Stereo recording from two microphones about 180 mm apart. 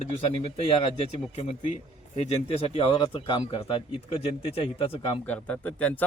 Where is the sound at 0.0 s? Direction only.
35° left (ahead or behind).